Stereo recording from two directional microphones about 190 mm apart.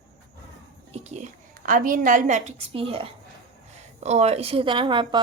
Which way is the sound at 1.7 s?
45° right (ahead or behind).